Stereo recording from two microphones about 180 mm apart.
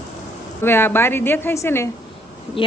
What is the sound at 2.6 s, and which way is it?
Speech, 30° left (ahead or behind).